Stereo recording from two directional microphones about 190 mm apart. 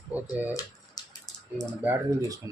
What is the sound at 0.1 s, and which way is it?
Speech, 10° right (ahead or behind).